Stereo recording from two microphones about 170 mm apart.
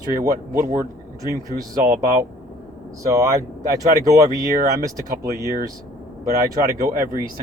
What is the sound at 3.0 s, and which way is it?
Speech, 20° right (ahead or behind).